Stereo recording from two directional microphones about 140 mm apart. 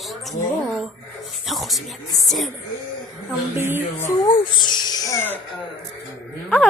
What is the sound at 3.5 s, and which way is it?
Speech, 15° right (ahead or behind).